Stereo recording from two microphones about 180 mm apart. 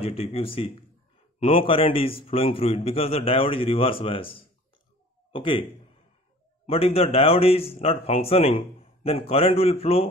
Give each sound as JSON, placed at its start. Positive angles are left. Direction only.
{"t": 0.0, "sound": "a man's voice", "side_deg": 35}